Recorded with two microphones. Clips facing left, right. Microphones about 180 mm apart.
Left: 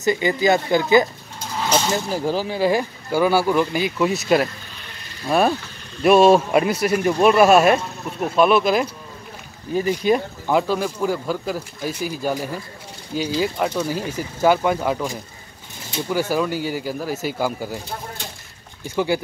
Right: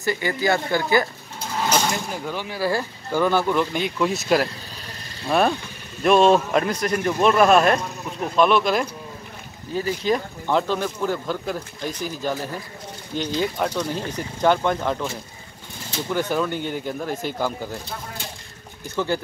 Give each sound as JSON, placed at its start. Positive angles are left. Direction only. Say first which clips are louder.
{"t": 0.0, "sound": "speech", "louder": "left 5 dB", "side_deg": 20}
{"t": 2.0, "sound": "speech", "louder": "left 7 dB", "side_deg": 35}
{"t": 2.6, "sound": "a man's voice", "louder": "left 3 dB", "side_deg": 15}
{"t": 18.9, "sound": "a man's voice", "louder": "left 3 dB", "side_deg": 10}